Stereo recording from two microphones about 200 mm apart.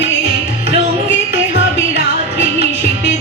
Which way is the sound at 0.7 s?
30° right (ahead or behind).